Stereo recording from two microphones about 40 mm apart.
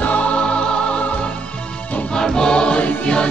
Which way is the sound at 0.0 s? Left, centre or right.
Left.